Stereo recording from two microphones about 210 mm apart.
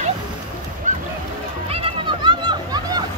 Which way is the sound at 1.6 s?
25° right (ahead or behind).